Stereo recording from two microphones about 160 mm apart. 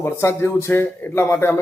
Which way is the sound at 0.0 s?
15° left (ahead or behind).